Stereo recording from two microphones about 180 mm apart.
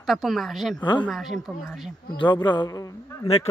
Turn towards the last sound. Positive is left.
turn(degrees=35)  # may be behind; listen again after turning